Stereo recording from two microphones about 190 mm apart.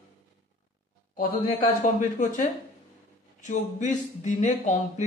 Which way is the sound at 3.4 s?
40° left (ahead or behind).